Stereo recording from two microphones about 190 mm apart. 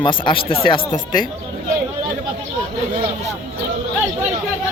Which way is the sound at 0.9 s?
45° left (ahead or behind).